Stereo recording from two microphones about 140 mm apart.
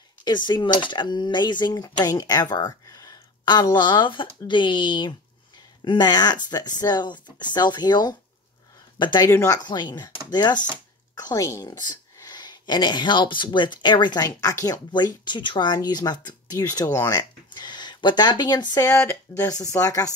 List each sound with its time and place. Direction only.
0.2 s a woman's voice: 30° left (ahead or behind)
9.3 s speech: 20° left (ahead or behind)
9.7 s a woman's voice: 30° left (ahead or behind)
18.9 s speech: 20° left (ahead or behind)